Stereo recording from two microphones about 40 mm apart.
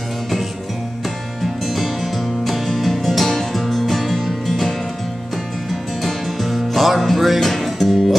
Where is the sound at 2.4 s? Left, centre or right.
Centre.